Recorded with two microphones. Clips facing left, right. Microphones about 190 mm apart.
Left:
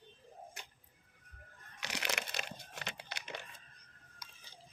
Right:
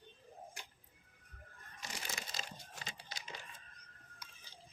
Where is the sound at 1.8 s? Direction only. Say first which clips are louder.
Left 7 dB; 75° left (ahead or behind).